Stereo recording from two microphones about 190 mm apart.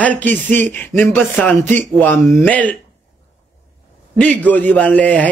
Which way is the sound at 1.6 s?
40° right (ahead or behind).